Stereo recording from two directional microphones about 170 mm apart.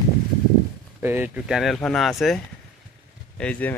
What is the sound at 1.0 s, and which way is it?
Speech, 15° right (ahead or behind).